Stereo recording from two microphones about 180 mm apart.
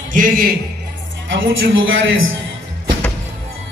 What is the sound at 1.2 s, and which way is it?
Speech, 90° right.